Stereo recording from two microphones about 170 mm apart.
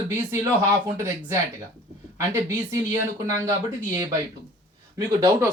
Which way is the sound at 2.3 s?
15° right (ahead or behind).